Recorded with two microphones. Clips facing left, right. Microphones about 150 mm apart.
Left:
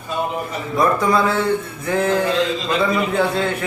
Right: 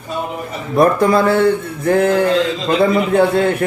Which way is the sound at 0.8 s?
60° right (ahead or behind).